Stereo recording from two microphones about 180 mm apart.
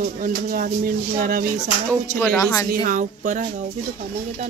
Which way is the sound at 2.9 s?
45° right (ahead or behind).